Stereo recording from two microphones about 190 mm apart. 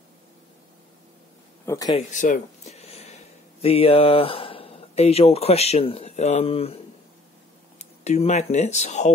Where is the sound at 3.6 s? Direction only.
30° left (ahead or behind).